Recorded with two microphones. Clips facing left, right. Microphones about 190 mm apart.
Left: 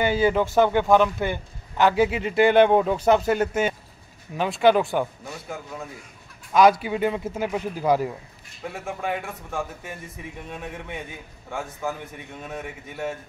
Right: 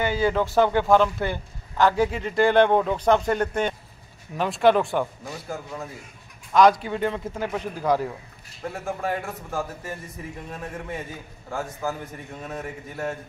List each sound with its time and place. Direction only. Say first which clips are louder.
0.0 s speech: left 2 dB; 25° left (ahead or behind)
0.3 s a man's voice: left 1 dB; 15° left (ahead or behind); by 13.1 s centre (ahead or behind)